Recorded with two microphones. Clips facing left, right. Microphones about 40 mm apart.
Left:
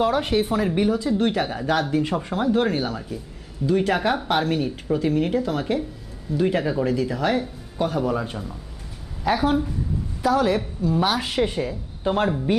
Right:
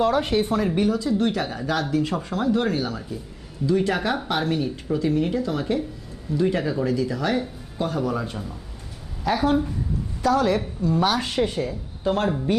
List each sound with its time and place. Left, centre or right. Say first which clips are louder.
0.0 s speech: even; centre